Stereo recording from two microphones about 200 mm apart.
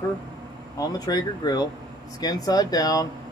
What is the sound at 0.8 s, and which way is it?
A man's voice, 20° left (ahead or behind).